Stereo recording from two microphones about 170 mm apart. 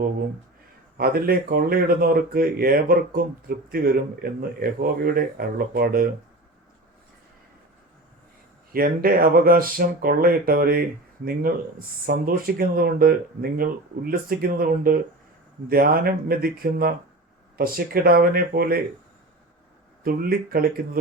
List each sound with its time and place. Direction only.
0.9 s speech: 60° right (ahead or behind)
8.7 s speech: 60° right (ahead or behind)
20.1 s speech: 60° right (ahead or behind)